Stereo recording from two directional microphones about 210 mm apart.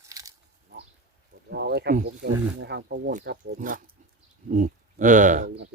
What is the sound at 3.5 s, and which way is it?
Speech, 40° right (ahead or behind).